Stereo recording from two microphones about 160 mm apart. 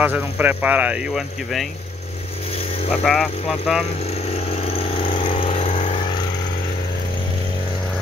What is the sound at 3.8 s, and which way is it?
Vehicle, 40° left (ahead or behind).